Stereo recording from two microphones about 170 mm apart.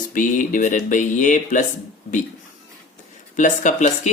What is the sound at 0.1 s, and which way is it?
Speech, 50° left (ahead or behind).